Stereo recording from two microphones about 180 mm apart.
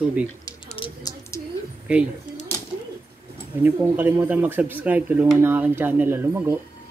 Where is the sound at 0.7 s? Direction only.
30° left (ahead or behind).